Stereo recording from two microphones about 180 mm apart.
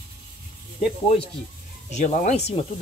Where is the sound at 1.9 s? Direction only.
40° left (ahead or behind).